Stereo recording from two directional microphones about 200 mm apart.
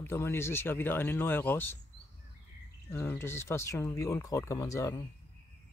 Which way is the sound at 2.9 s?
10° left (ahead or behind).